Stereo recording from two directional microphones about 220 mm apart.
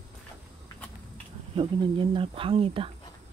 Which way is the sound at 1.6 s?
25° right (ahead or behind).